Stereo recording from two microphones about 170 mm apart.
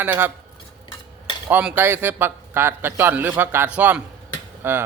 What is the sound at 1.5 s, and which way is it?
A man's voice, 10° right (ahead or behind).